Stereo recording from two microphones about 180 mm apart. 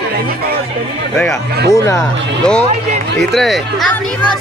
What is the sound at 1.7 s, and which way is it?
Speech, 20° left (ahead or behind).